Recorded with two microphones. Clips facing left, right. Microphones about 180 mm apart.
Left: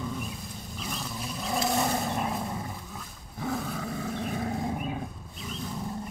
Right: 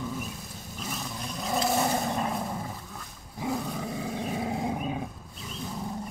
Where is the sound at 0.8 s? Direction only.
Centre (ahead or behind).